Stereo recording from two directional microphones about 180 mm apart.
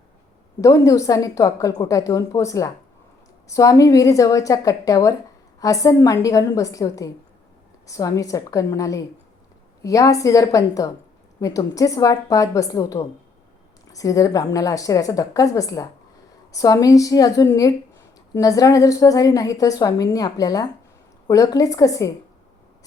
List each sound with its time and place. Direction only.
0.6 s a woman's voice: 20° left (ahead or behind)